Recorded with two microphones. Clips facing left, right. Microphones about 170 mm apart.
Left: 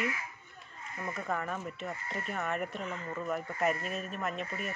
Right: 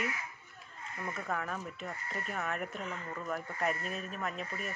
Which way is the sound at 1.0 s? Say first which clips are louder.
Left 2 dB; centre (ahead or behind).